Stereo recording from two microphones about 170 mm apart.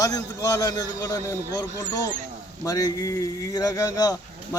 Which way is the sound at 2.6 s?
20° left (ahead or behind).